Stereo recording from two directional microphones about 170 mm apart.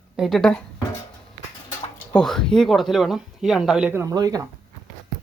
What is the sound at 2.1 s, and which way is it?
Speech, 5° left (ahead or behind).